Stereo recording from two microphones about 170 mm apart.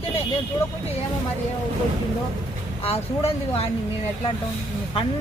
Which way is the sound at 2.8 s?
35° left (ahead or behind).